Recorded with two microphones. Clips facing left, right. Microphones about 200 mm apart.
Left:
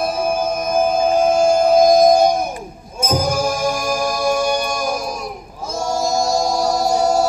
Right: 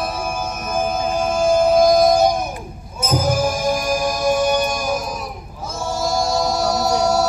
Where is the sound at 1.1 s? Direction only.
50° left (ahead or behind).